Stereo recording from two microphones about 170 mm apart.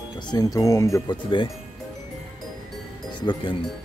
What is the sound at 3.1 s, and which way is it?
Speech, 30° left (ahead or behind).